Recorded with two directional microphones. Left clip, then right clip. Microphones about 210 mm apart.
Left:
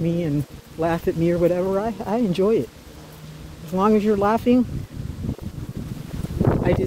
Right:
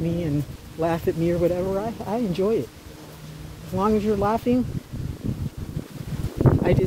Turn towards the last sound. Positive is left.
turn(degrees=10)  # may be behind; listen again after turning